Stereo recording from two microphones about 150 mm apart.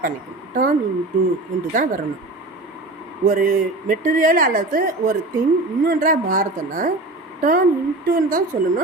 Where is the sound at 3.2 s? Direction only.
65° right (ahead or behind).